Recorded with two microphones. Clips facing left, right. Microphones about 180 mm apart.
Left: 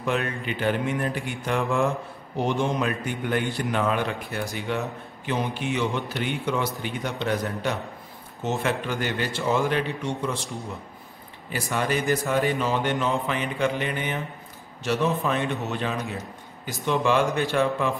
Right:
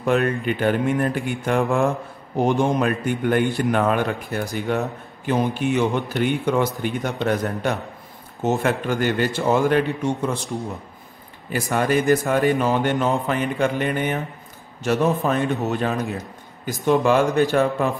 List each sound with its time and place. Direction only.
0.0 s a man's voice: 50° right (ahead or behind)
11.5 s a man's voice: 50° right (ahead or behind)